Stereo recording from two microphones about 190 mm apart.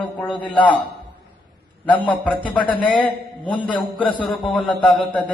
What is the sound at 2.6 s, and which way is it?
A man's voice, 5° left (ahead or behind).